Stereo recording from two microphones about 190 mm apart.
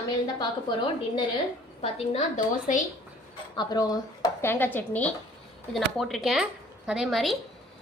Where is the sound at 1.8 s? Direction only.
40° left (ahead or behind).